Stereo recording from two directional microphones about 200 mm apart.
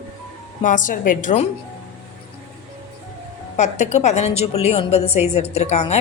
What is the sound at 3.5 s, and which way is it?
A woman's voice, 35° left (ahead or behind).